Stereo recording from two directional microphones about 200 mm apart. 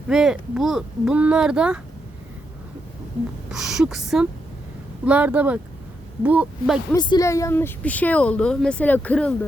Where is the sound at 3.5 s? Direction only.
Centre (ahead or behind).